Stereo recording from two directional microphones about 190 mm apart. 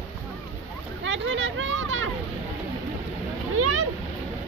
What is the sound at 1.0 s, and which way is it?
Hubbub, 75° right (ahead or behind).